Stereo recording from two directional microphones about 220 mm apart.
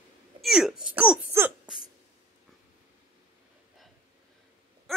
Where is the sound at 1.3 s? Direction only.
10° right (ahead or behind).